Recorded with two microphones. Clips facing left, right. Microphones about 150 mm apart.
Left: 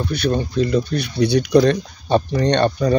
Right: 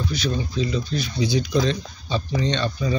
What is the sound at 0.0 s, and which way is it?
Speech, 60° left (ahead or behind).